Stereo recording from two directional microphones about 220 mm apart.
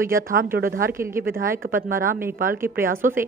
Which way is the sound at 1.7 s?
40° right (ahead or behind).